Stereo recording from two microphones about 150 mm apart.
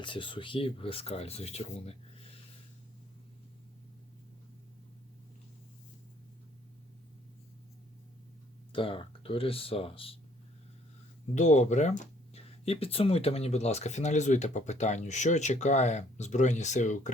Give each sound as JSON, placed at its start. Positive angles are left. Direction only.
{"t": 0.0, "sound": "speech", "side_deg": 35}
{"t": 8.7, "sound": "speech", "side_deg": 35}
{"t": 11.3, "sound": "speech", "side_deg": 50}